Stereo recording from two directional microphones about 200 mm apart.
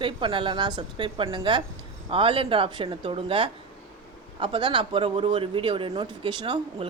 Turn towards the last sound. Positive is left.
turn(degrees=-25)  # may be behind; listen again after turning